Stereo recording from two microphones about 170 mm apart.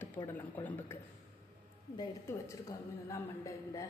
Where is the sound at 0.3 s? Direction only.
10° left (ahead or behind).